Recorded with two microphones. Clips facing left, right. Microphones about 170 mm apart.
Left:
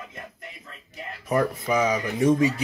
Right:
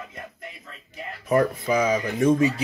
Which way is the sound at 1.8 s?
20° left (ahead or behind).